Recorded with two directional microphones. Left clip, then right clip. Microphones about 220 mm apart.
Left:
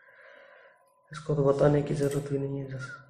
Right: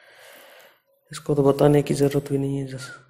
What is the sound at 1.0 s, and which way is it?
Speech, 35° right (ahead or behind).